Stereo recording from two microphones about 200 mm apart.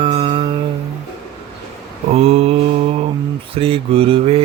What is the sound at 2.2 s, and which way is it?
Mantra, 30° right (ahead or behind).